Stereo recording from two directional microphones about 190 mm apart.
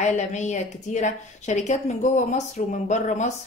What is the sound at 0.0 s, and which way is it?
A woman's voice, 40° left (ahead or behind).